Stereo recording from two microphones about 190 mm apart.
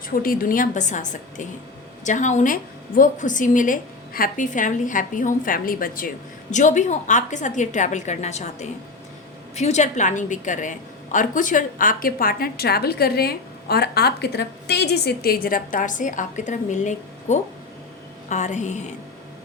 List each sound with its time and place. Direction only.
0.1 s a woman's voice: 50° left (ahead or behind)